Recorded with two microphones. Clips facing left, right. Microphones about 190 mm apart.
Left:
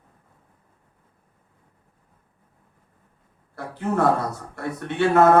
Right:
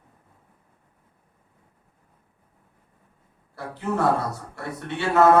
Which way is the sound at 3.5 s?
50° left (ahead or behind).